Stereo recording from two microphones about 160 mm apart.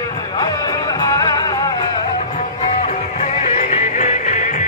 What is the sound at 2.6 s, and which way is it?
Music, 45° left (ahead or behind).